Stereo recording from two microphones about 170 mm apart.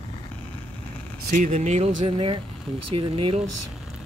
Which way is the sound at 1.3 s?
45° right (ahead or behind).